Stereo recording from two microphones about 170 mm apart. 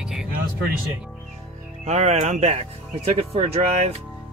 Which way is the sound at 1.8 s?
45° right (ahead or behind).